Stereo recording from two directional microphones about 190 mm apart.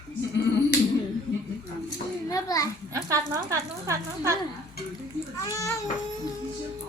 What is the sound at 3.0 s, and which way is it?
Speech, 15° right (ahead or behind).